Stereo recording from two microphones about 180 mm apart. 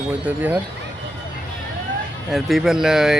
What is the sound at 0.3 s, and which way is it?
Speech, 10° right (ahead or behind).